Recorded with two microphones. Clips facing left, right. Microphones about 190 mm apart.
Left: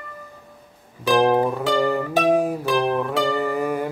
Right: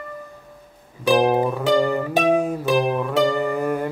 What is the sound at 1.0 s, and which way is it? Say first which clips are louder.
Music: even; 15° right (ahead or behind).